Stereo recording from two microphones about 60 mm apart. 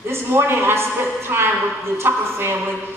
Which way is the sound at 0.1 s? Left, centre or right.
Right.